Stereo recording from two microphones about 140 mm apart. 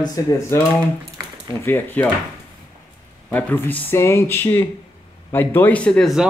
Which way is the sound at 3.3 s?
15° left (ahead or behind).